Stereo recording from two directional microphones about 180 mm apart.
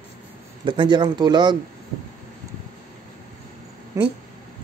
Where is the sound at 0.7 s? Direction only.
25° right (ahead or behind).